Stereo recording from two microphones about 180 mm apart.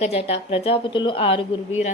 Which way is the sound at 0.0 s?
35° left (ahead or behind).